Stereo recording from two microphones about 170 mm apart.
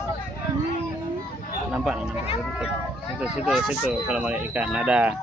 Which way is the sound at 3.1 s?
5° right (ahead or behind).